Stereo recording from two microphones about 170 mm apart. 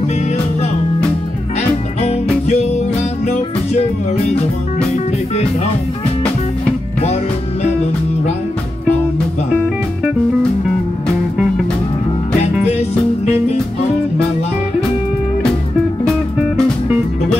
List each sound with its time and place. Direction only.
2.4 s music: 40° left (ahead or behind)
4.9 s music: 40° left (ahead or behind)
12.6 s music: 40° left (ahead or behind)